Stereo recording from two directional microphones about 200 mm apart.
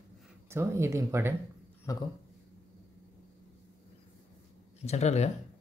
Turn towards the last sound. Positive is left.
turn(degrees=35)  # may be behind; listen again after turning